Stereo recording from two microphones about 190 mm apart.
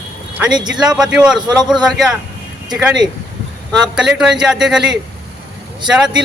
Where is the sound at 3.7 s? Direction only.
5° right (ahead or behind).